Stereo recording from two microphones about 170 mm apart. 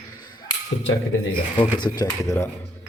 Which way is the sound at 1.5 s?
25° left (ahead or behind).